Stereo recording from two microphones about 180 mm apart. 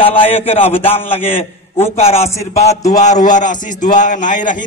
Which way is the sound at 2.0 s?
35° left (ahead or behind).